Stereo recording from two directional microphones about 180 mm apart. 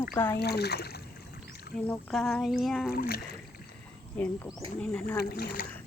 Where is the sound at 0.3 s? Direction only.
65° left (ahead or behind).